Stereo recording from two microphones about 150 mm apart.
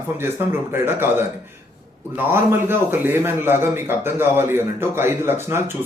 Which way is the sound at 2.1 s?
15° right (ahead or behind).